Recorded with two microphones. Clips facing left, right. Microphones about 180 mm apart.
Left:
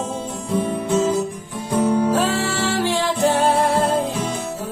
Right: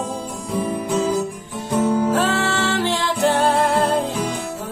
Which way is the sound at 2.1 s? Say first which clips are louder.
Even; 15° left (ahead or behind).